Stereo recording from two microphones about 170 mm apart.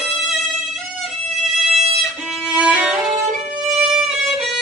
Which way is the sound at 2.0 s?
5° right (ahead or behind).